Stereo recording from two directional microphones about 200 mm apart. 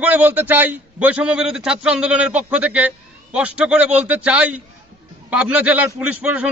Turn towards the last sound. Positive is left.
turn(degrees=-5)  # may be behind; listen again after turning